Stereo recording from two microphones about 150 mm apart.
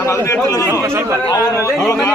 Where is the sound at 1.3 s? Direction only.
25° left (ahead or behind).